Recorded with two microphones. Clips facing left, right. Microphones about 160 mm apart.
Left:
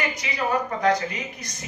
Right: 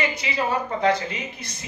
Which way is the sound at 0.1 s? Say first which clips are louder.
Even; 25° right (ahead or behind).